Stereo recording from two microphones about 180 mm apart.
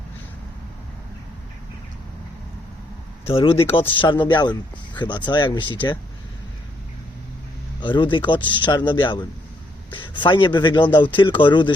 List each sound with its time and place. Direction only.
3.2 s a man's voice: 30° left (ahead or behind)
7.8 s a man's voice: 25° left (ahead or behind)